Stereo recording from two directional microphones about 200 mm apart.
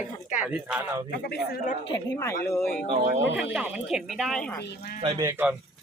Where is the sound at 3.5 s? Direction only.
5° right (ahead or behind).